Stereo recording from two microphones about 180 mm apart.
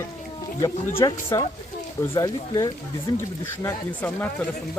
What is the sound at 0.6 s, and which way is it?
Speech, 15° left (ahead or behind).